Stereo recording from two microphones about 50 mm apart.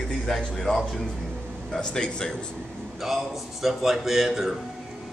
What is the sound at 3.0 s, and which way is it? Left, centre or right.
A man's voice, centre.